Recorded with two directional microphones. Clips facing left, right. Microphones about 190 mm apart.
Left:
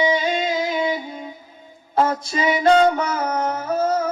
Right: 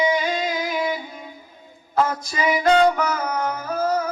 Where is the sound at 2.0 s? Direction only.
25° left (ahead or behind).